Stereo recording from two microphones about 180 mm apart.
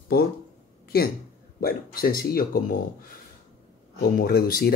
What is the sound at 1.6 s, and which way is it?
Speech, 55° left (ahead or behind).